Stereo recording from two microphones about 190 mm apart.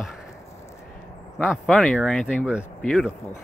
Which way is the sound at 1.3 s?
Centre (ahead or behind).